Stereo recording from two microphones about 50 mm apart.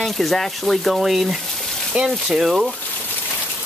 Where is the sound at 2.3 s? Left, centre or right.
Centre.